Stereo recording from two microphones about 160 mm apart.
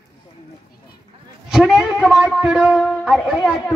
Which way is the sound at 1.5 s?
5° right (ahead or behind).